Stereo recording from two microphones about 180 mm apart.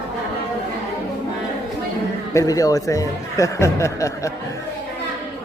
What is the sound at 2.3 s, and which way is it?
Speech, 20° left (ahead or behind).